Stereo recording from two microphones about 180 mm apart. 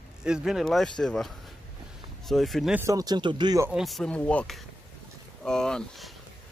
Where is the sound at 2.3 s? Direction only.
Centre (ahead or behind).